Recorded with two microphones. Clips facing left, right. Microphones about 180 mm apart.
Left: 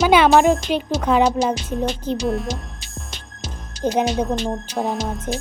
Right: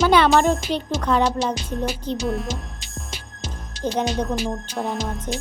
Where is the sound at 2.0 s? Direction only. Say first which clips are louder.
Left 3 dB; 5° left (ahead or behind).